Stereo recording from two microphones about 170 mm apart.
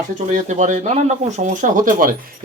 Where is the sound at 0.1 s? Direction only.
45° right (ahead or behind).